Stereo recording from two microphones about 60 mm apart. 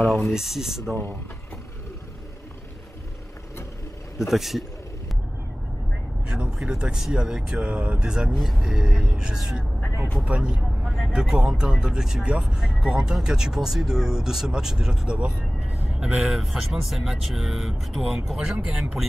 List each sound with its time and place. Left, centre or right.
0.0 s speech: centre
0.3 s speech: centre
4.3 s speech: centre
6.2 s speech: centre
18.6 s speech: centre